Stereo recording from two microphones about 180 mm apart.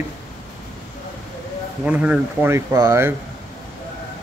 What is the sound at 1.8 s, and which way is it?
Speech, 5° right (ahead or behind).